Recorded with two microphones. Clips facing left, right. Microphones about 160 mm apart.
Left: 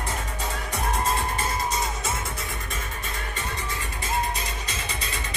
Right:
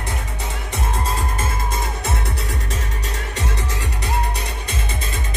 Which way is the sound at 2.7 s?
80° right.